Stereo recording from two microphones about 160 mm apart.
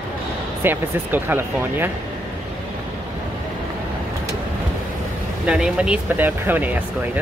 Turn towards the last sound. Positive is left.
turn(degrees=-10)  # may be behind; listen again after turning